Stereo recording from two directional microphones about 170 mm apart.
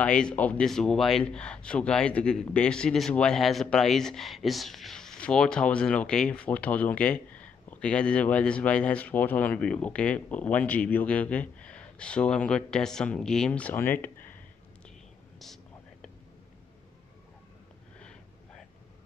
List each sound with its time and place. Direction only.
0.0 s a man's voice: 5° left (ahead or behind)
15.3 s whispering: centre (ahead or behind)